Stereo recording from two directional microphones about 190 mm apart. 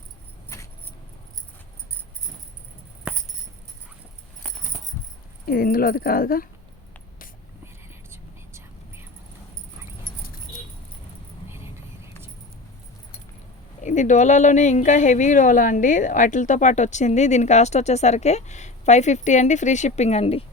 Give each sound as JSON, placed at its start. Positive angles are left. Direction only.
{"t": 0.5, "sound": "vehicle", "side_deg": 15}
{"t": 4.7, "sound": "a sound", "side_deg": 35}
{"t": 5.5, "sound": "speech", "side_deg": 50}
{"t": 8.1, "sound": "whispering", "side_deg": -15}
{"t": 11.4, "sound": "vehicle", "side_deg": -15}
{"t": 13.8, "sound": "speech", "side_deg": 40}